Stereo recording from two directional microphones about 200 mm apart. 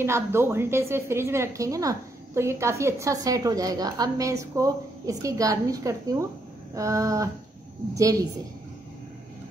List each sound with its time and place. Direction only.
0.0 s a woman's voice: 10° right (ahead or behind)